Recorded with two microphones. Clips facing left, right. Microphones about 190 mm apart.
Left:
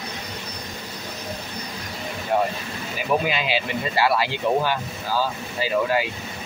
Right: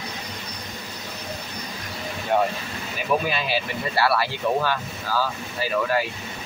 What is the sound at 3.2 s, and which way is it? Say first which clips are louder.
Speech: left 1 dB; 15° left (ahead or behind).